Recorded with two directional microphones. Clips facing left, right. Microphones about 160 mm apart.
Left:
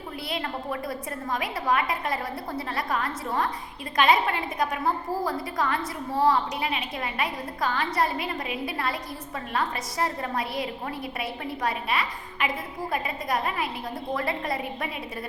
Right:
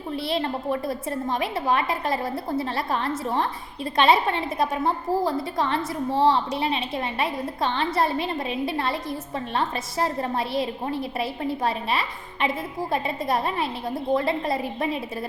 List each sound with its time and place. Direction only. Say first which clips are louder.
0.3 s a woman's voice: right 5 dB; 30° right (ahead or behind)